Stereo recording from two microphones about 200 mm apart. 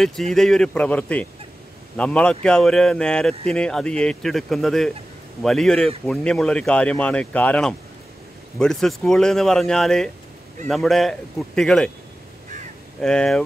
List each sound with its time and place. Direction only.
0.0 s speech: centre (ahead or behind)
13.0 s speech: 5° left (ahead or behind)